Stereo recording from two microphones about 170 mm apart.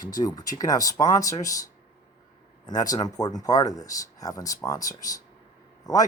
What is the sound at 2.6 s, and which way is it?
Speech, 20° left (ahead or behind).